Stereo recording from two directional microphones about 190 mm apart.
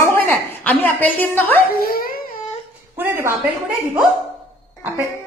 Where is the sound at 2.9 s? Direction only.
10° right (ahead or behind).